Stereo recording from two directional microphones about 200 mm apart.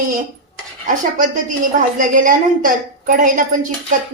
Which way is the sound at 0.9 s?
40° right (ahead or behind).